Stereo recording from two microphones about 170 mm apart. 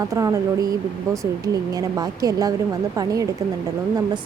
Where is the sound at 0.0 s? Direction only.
20° right (ahead or behind).